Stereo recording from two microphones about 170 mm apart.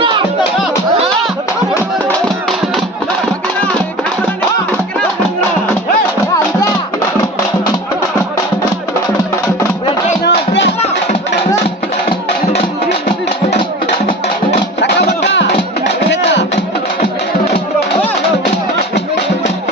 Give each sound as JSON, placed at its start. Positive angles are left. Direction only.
{"t": 10.2, "sound": "music", "side_deg": 90}
{"t": 14.8, "sound": "music", "side_deg": 90}